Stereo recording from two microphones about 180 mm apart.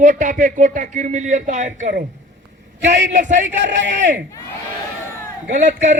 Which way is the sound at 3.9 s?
45° right (ahead or behind).